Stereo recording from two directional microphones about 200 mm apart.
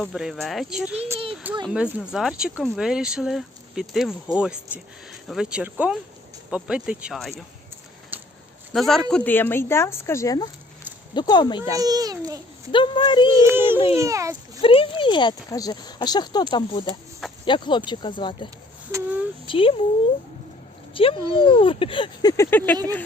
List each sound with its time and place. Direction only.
0.0 s speech: centre (ahead or behind)
8.1 s a sound: 10° right (ahead or behind)
8.7 s speech: centre (ahead or behind); by 11.7 s 20° left (ahead or behind)
11.7 s a child's voice: 20° right (ahead or behind)
12.7 s speech: 25° left (ahead or behind)
13.4 s a child's voice: 10° right (ahead or behind)
14.6 s speech: 25° left (ahead or behind)
18.9 s speech: 10° right (ahead or behind)
19.5 s speech: 25° left (ahead or behind)
20.9 s speech: 25° left (ahead or behind); by 22.8 s 10° left (ahead or behind)